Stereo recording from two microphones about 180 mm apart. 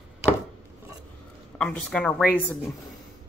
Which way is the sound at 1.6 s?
5° left (ahead or behind).